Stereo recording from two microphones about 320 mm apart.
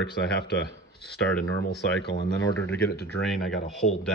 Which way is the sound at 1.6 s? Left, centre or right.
Left.